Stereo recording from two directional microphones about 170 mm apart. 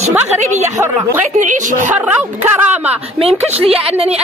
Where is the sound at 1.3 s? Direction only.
45° right (ahead or behind).